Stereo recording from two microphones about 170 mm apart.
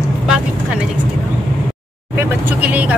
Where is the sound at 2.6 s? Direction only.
10° right (ahead or behind).